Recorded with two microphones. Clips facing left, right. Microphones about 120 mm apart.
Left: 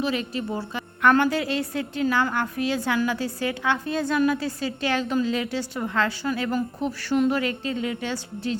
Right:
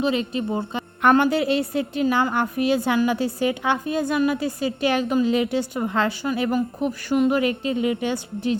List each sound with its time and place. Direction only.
0.0 s a woman's voice: 25° right (ahead or behind)